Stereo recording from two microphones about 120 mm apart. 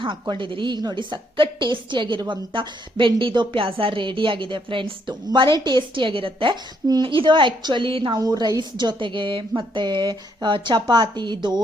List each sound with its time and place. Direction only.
0.0 s a woman's voice: 40° right (ahead or behind)